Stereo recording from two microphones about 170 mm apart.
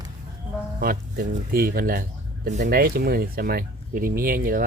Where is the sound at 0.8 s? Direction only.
60° right (ahead or behind).